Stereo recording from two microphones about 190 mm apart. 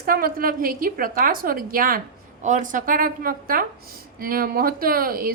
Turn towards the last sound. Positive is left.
turn(degrees=-50)  # may be behind; listen again after turning